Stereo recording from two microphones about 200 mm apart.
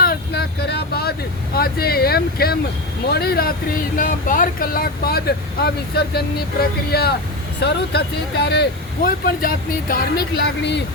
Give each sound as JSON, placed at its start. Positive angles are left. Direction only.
{"t": 0.0, "sound": "vehicle", "side_deg": 50}
{"t": 1.5, "sound": "speech", "side_deg": 50}